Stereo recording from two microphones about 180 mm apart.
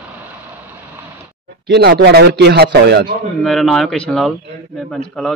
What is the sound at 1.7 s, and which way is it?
Speech, 70° right (ahead or behind).